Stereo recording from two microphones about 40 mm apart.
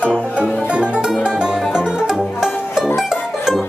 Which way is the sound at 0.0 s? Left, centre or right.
Right.